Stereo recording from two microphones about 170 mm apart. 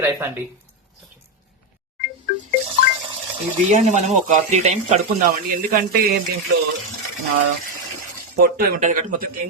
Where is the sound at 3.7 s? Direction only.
40° right (ahead or behind).